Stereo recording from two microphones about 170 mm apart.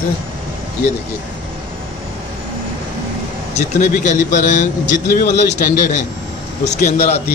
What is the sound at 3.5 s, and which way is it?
A man's voice, 45° left (ahead or behind).